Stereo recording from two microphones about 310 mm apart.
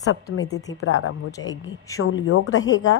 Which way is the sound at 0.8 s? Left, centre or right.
Left.